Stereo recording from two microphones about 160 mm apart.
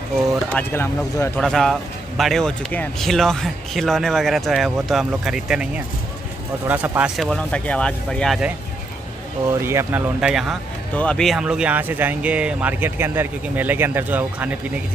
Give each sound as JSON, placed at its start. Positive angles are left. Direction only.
{"t": 0.5, "sound": "speech", "side_deg": 15}
{"t": 1.4, "sound": "speech", "side_deg": 0}
{"t": 6.7, "sound": "speech", "side_deg": -10}
{"t": 7.2, "sound": "speech", "side_deg": 5}
{"t": 9.5, "sound": "speech", "side_deg": -15}
{"t": 10.2, "sound": "speech", "side_deg": -5}